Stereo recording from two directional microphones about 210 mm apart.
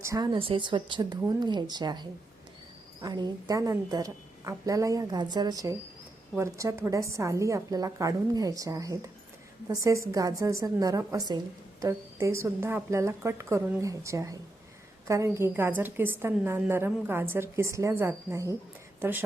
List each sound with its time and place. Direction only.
0.0 s a woman's voice: 15° right (ahead or behind)